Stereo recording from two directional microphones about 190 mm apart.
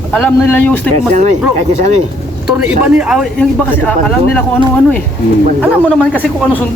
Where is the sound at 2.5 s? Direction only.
5° right (ahead or behind).